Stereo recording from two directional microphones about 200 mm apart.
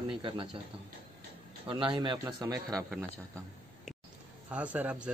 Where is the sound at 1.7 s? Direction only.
25° right (ahead or behind).